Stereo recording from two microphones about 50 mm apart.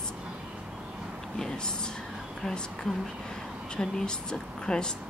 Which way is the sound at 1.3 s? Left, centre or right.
Centre.